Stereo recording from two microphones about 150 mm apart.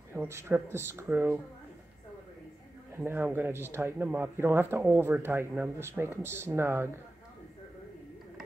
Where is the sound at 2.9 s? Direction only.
15° right (ahead or behind).